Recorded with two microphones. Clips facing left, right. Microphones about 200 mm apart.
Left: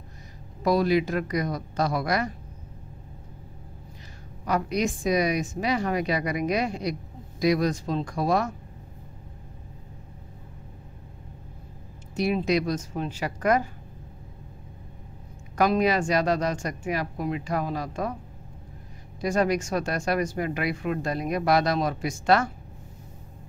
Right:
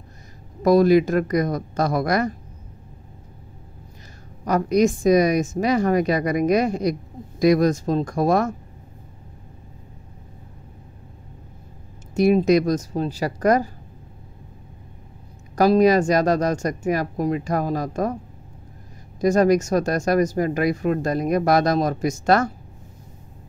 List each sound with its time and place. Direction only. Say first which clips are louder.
0.6 s a woman's voice: right 7 dB; 45° right (ahead or behind)
4.5 s a woman's voice: right 7 dB; 45° right (ahead or behind)
12.2 s speech: right 8 dB; 45° right (ahead or behind)
15.5 s a woman's voice: right 7 dB; 35° right (ahead or behind)
19.2 s speech: right 7 dB; 45° right (ahead or behind)